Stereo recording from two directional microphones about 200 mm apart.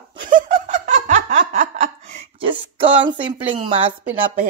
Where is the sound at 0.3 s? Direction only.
40° right (ahead or behind).